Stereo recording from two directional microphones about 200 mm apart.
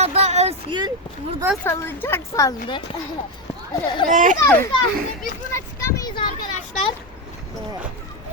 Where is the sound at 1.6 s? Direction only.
10° left (ahead or behind).